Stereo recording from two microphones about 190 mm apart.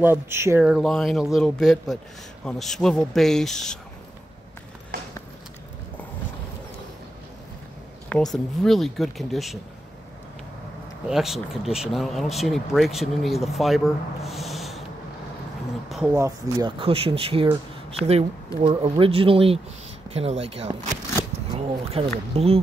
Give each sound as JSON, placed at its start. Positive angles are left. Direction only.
{"t": 0.0, "sound": "speech", "side_deg": -10}
{"t": 8.1, "sound": "speech", "side_deg": 0}
{"t": 11.1, "sound": "speech", "side_deg": 0}
{"t": 15.9, "sound": "a sound", "side_deg": -5}
{"t": 16.2, "sound": "speech", "side_deg": -20}